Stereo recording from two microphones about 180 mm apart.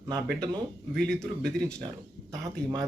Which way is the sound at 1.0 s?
5° left (ahead or behind).